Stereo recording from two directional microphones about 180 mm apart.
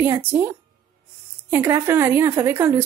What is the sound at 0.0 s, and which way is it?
Speech, 15° right (ahead or behind).